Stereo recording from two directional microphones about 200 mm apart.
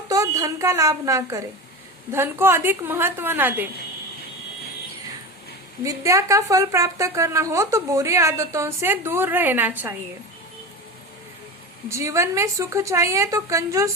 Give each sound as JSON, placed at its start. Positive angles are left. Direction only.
{"t": 0.1, "sound": "a woman's voice", "side_deg": -15}
{"t": 5.8, "sound": "speech", "side_deg": -15}
{"t": 11.9, "sound": "speech", "side_deg": -15}